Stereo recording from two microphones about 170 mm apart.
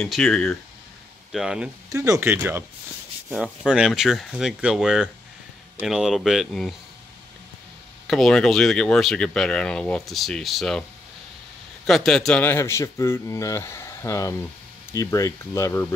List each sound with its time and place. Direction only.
0.0 s speech: centre (ahead or behind)
1.9 s speech: 20° right (ahead or behind)
3.6 s speech: 5° right (ahead or behind)
8.1 s speech: 5° left (ahead or behind)